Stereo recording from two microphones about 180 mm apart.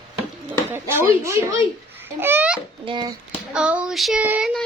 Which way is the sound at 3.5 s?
5° right (ahead or behind).